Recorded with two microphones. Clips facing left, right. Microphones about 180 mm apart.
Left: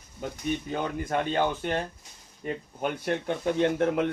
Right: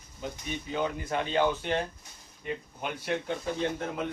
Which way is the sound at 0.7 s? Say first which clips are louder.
Left 1 dB; 50° left (ahead or behind).